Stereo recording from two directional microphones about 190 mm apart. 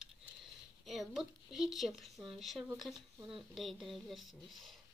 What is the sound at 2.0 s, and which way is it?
A woman's voice, centre (ahead or behind).